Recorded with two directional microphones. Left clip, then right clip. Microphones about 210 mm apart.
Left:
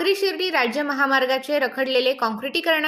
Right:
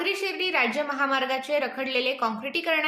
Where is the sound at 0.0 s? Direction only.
30° left (ahead or behind).